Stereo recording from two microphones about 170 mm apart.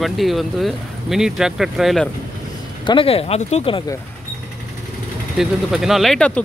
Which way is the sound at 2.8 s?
30° left (ahead or behind).